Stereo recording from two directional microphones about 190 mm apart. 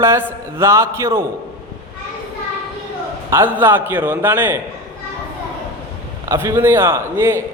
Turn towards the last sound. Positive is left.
turn(degrees=-15)  # may be behind; listen again after turning